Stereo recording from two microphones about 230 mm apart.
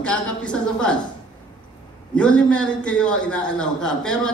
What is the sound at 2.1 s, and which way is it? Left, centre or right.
A man's voice, centre.